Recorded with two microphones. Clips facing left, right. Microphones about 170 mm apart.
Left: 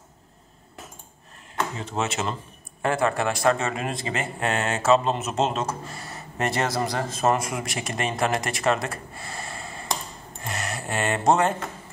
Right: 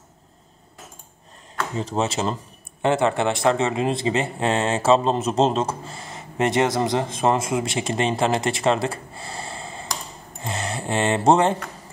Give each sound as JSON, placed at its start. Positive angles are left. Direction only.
{"t": 1.8, "sound": "speech", "side_deg": -35}
{"t": 10.4, "sound": "a sound", "side_deg": -30}
{"t": 11.2, "sound": "speech", "side_deg": -30}